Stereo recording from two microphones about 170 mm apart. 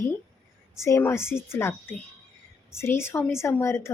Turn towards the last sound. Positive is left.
turn(degrees=15)  # may be behind; listen again after turning